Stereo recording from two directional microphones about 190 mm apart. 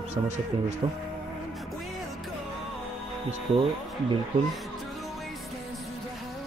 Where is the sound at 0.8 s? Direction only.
25° right (ahead or behind).